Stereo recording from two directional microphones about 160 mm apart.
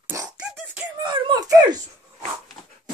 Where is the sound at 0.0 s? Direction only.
20° right (ahead or behind).